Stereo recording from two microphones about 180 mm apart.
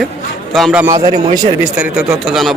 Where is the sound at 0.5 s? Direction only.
Centre (ahead or behind).